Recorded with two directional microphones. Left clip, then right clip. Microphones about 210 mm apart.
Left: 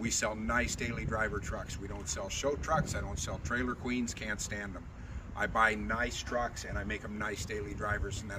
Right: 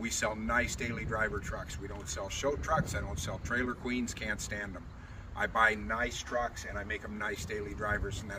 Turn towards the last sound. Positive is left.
turn(degrees=-10)  # may be behind; listen again after turning